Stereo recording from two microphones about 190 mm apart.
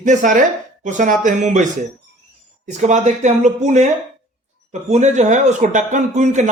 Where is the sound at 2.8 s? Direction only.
40° right (ahead or behind).